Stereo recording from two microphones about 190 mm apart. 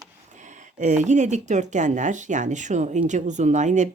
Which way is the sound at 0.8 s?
40° right (ahead or behind).